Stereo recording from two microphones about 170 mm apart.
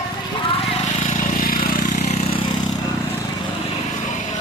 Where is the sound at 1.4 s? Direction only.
55° left (ahead or behind).